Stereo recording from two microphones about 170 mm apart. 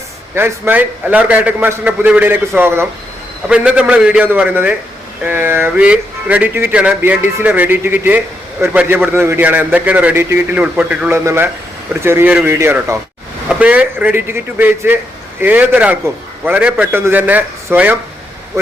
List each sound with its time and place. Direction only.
0.3 s speech: 15° right (ahead or behind)